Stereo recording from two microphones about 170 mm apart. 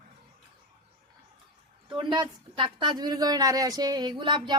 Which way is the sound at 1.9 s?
30° right (ahead or behind).